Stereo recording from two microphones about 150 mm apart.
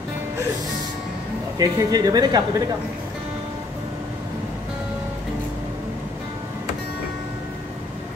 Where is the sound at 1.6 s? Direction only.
25° right (ahead or behind).